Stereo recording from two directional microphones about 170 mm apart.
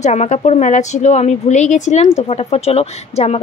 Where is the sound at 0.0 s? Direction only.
40° left (ahead or behind).